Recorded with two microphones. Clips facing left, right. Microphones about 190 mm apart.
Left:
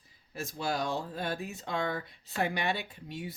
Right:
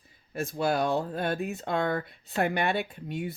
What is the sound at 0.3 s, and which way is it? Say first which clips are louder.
Speech: right 6 dB; 55° right (ahead or behind).